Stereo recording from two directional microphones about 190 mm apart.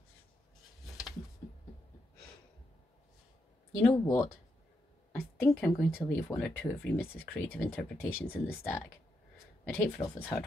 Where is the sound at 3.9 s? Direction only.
20° left (ahead or behind).